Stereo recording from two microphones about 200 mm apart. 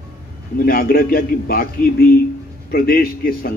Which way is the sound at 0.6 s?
50° left (ahead or behind).